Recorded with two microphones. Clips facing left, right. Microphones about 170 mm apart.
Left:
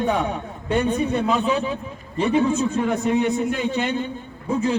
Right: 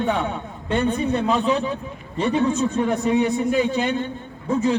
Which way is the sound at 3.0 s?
Centre (ahead or behind).